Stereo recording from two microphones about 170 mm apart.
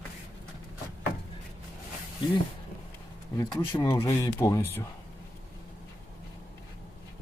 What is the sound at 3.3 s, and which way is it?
Speech, 20° left (ahead or behind).